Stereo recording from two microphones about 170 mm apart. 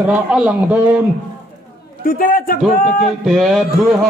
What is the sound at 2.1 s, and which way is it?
Speech, 55° left (ahead or behind).